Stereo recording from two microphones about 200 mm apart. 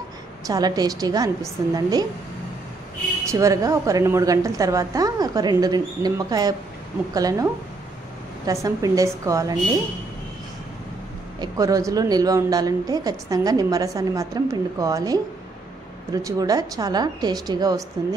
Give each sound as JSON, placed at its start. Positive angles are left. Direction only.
{"t": 0.5, "sound": "a woman's voice", "side_deg": -20}
{"t": 3.3, "sound": "a woman's voice", "side_deg": -15}
{"t": 8.6, "sound": "a woman's voice", "side_deg": -15}
{"t": 11.4, "sound": "a woman's voice", "side_deg": -15}